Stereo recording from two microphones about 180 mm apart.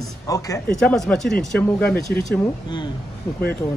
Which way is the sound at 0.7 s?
5° left (ahead or behind).